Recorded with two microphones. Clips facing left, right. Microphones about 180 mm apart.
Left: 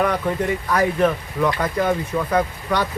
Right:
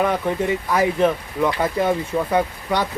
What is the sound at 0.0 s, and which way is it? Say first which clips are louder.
Speech: even; 10° right (ahead or behind).